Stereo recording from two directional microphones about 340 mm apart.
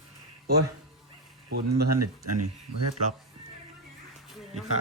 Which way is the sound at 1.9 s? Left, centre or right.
Right.